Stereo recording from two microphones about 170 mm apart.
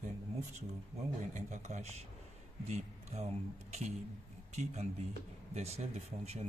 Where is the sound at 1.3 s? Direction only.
45° right (ahead or behind).